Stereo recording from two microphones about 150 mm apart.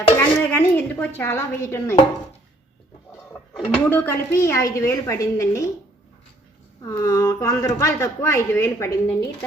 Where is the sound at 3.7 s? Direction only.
10° left (ahead or behind).